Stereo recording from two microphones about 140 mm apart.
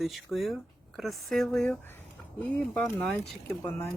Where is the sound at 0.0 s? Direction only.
Centre (ahead or behind); by 3.8 s 15° left (ahead or behind).